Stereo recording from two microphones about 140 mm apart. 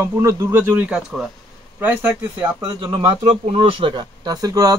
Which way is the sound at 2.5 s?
35° right (ahead or behind).